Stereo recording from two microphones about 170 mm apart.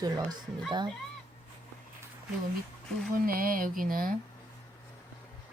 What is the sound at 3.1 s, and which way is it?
Speech, 55° right (ahead or behind).